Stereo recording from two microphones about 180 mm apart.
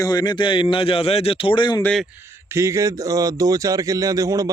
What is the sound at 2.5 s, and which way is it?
Speech, 15° right (ahead or behind).